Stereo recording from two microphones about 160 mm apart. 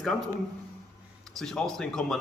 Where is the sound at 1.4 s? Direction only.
5° left (ahead or behind).